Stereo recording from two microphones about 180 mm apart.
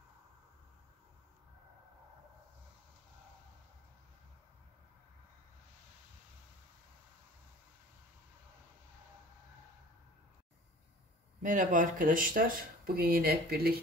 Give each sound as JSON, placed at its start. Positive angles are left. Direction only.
{"t": 11.4, "sound": "speech", "side_deg": -45}